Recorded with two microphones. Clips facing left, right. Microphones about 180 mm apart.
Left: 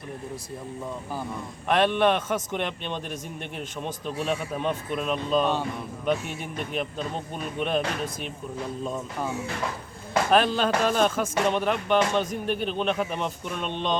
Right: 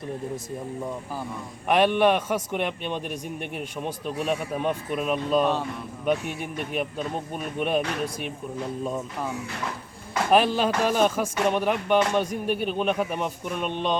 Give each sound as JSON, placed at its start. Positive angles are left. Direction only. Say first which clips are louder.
{"t": 1.6, "sound": "speech", "louder": "right 2 dB", "side_deg": -10}
{"t": 7.6, "sound": "speech", "louder": "right 1 dB", "side_deg": -10}
{"t": 9.2, "sound": "speech", "louder": "left 1 dB", "side_deg": 25}
{"t": 10.3, "sound": "speech", "louder": "right 2 dB", "side_deg": -10}